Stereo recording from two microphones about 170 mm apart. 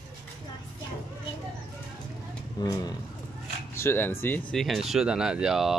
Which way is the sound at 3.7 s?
15° left (ahead or behind).